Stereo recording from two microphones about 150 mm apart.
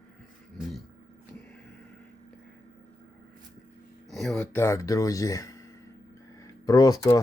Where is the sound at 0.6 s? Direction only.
Centre (ahead or behind).